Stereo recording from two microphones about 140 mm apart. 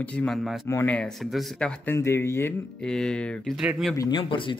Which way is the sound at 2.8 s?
5° left (ahead or behind).